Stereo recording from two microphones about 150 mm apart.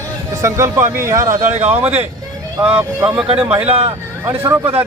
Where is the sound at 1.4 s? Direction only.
50° right (ahead or behind).